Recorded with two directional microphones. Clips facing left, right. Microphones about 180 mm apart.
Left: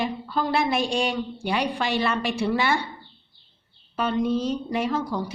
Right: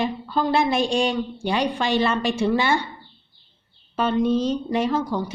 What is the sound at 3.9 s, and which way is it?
A woman's voice, 25° right (ahead or behind).